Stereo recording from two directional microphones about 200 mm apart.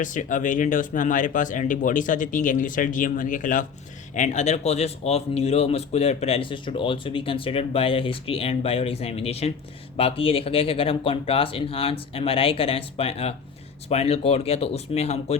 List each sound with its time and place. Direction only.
0.0 s speech: 40° left (ahead or behind)